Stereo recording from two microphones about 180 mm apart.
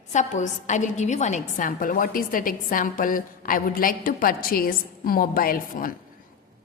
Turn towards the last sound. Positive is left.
turn(degrees=50)  # may be behind; listen again after turning